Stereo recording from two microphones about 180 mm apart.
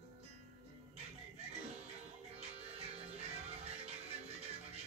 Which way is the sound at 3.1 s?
35° right (ahead or behind).